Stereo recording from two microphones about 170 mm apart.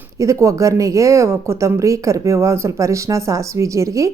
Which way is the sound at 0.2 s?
15° right (ahead or behind).